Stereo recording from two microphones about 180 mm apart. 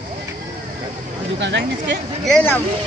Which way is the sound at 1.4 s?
75° right (ahead or behind).